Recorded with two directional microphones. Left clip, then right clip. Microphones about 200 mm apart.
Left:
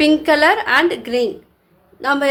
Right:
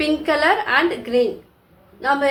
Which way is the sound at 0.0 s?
55° left (ahead or behind).